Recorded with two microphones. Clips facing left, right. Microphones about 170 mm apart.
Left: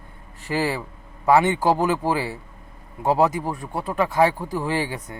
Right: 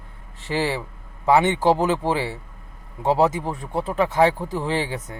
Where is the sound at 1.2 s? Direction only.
20° right (ahead or behind).